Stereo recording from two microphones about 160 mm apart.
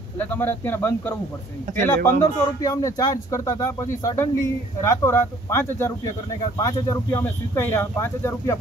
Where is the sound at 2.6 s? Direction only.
20° left (ahead or behind).